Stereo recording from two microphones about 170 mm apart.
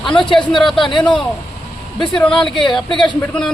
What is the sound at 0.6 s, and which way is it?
Speech, centre (ahead or behind).